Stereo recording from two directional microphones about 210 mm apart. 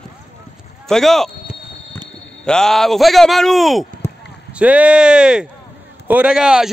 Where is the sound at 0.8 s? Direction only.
Centre (ahead or behind).